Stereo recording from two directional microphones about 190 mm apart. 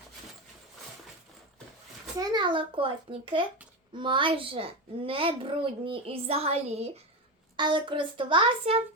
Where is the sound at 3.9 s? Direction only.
25° right (ahead or behind).